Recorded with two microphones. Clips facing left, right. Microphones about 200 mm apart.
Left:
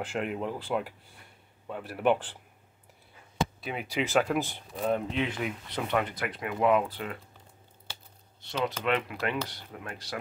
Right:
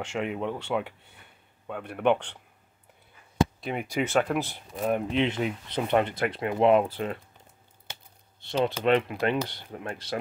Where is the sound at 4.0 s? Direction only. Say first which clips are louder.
Right 1 dB; centre (ahead or behind).